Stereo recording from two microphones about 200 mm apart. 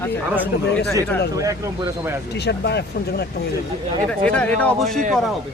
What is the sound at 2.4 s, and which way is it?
Speech, 55° left (ahead or behind).